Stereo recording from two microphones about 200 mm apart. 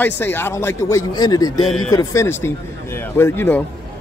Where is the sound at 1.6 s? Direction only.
Centre (ahead or behind).